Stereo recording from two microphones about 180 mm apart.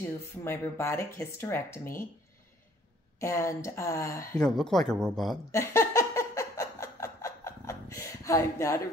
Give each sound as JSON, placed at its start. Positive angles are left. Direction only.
{"t": 0.4, "sound": "speech", "side_deg": 15}
{"t": 3.2, "sound": "speech", "side_deg": 15}
{"t": 4.4, "sound": "speech", "side_deg": 5}
{"t": 5.5, "sound": "a sound", "side_deg": 15}